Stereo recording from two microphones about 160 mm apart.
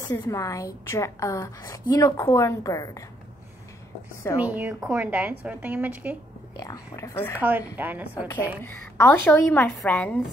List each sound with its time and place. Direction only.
0.0 s a woman's voice: 20° left (ahead or behind)
4.4 s a woman's voice: 10° right (ahead or behind)
6.5 s a woman's voice: 20° left (ahead or behind)
7.3 s a woman's voice: 10° right (ahead or behind)
8.6 s a woman's voice: 15° left (ahead or behind)